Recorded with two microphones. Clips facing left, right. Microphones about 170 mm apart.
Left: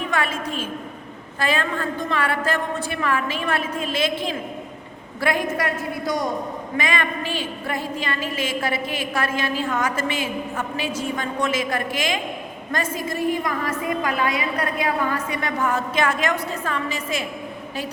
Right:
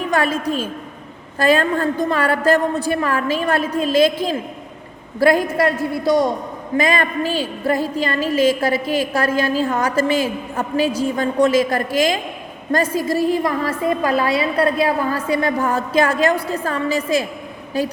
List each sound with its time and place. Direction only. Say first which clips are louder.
0.1 s a woman's voice: right 9 dB; 40° right (ahead or behind)